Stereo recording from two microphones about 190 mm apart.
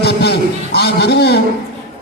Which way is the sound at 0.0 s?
60° left (ahead or behind).